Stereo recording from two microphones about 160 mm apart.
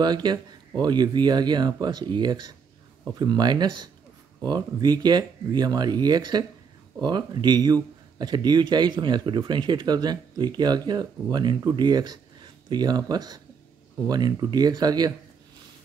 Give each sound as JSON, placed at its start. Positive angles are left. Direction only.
{"t": 0.0, "sound": "speech", "side_deg": -25}